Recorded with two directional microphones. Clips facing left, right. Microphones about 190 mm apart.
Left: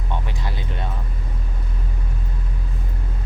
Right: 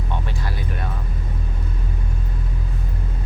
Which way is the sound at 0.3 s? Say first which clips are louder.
Right 1 dB; 20° left (ahead or behind).